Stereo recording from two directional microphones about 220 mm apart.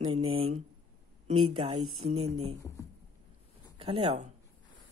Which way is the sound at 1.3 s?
75° right (ahead or behind).